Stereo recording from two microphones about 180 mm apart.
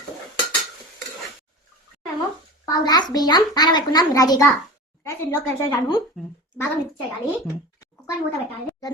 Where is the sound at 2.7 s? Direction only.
20° left (ahead or behind).